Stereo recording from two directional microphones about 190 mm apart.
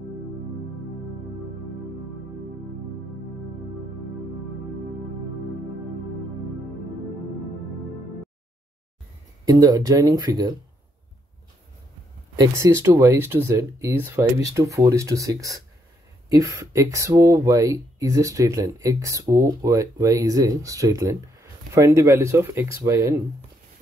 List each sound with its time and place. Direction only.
9.5 s speech: 20° right (ahead or behind)
12.4 s speech: 15° right (ahead or behind)